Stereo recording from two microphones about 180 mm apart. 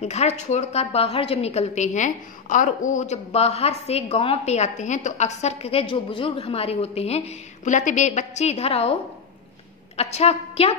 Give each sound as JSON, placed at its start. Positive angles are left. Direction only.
{"t": 0.0, "sound": "a woman's voice", "side_deg": 40}
{"t": 9.9, "sound": "a woman's voice", "side_deg": 35}